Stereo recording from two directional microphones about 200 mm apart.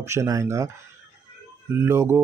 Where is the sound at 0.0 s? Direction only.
15° right (ahead or behind).